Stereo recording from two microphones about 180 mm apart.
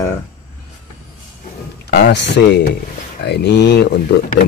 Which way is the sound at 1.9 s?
70° left (ahead or behind).